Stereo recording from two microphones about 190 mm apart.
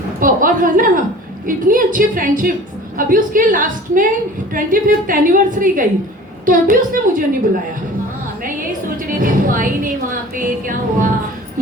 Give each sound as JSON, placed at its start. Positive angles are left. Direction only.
{"t": 0.2, "sound": "a woman's voice", "side_deg": -45}
{"t": 9.0, "sound": "music", "side_deg": -45}